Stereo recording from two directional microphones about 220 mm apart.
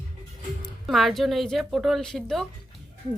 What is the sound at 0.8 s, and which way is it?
A woman's voice, centre (ahead or behind).